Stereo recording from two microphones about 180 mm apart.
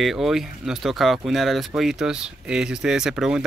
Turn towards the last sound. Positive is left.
turn(degrees=-5)  # may be behind; listen again after turning